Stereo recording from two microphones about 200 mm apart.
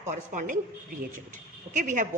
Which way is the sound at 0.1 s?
40° right (ahead or behind).